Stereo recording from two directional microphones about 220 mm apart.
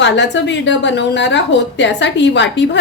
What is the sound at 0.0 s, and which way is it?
A woman's voice, 55° left (ahead or behind).